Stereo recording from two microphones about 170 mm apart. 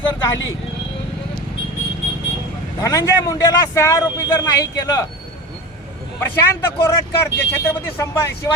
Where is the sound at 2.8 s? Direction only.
20° left (ahead or behind).